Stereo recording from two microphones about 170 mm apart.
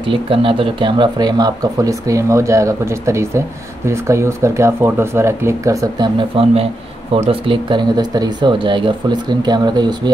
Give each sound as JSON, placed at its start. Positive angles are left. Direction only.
{"t": 0.0, "sound": "speech", "side_deg": -30}
{"t": 6.1, "sound": "speech", "side_deg": -35}